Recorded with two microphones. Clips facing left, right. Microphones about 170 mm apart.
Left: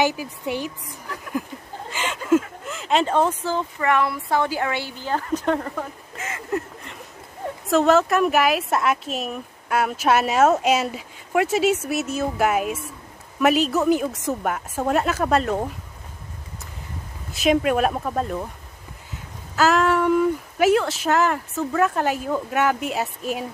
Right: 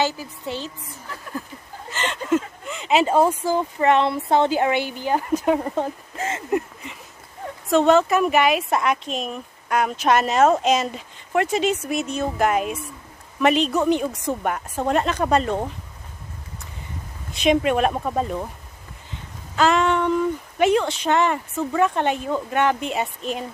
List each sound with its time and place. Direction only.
0.0 s a woman's voice: 15° left (ahead or behind)
1.9 s a sound: 10° left (ahead or behind); by 3.6 s 10° right (ahead or behind)
3.8 s a woman's voice: 25° right (ahead or behind)
5.8 s a sound: 30° right (ahead or behind)
7.7 s speech: centre (ahead or behind)
17.3 s speech: centre (ahead or behind)
19.5 s speech: 5° left (ahead or behind)